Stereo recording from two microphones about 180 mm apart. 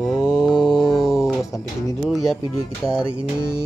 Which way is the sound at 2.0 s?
Centre (ahead or behind).